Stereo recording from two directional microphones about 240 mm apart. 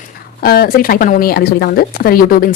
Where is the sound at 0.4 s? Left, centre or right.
Left.